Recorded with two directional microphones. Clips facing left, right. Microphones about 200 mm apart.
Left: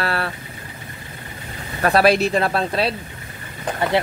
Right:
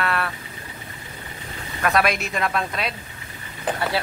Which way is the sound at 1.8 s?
30° left (ahead or behind).